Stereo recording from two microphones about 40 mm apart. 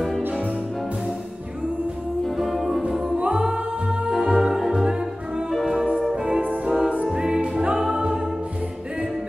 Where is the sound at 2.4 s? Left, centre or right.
Centre.